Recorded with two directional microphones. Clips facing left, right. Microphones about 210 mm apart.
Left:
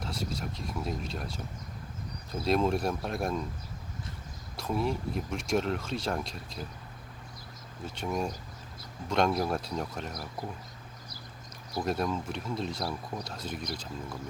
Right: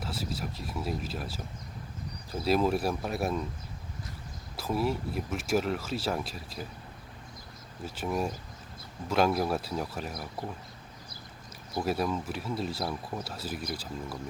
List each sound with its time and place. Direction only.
0.0 s speech: 5° right (ahead or behind)
4.5 s speech: 5° right (ahead or behind)
7.9 s speech: 5° right (ahead or behind)
11.8 s speech: 5° right (ahead or behind)